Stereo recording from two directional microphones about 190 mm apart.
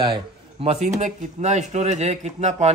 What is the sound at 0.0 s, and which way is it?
A man's voice, 30° right (ahead or behind).